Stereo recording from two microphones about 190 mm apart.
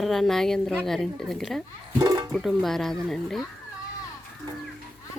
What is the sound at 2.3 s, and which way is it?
Speech, centre (ahead or behind).